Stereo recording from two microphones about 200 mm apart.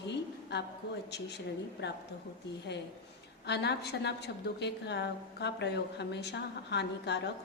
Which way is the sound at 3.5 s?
55° left (ahead or behind).